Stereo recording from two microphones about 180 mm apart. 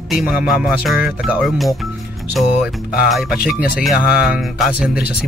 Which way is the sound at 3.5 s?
55° left (ahead or behind).